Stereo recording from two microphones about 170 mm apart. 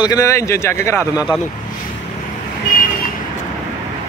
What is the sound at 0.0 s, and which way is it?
Speech, 20° left (ahead or behind).